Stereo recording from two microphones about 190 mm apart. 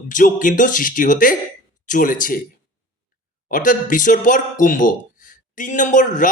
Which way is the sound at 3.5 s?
45° left (ahead or behind).